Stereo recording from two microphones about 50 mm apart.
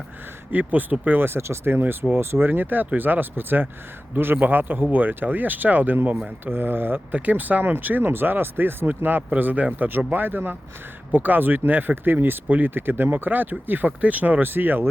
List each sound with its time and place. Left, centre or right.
0.6 s speech: right
1.8 s speech: right
7.1 s speech: right